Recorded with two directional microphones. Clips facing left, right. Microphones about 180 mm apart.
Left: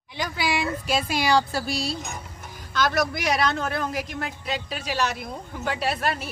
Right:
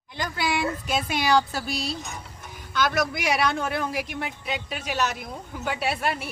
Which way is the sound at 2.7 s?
Centre (ahead or behind).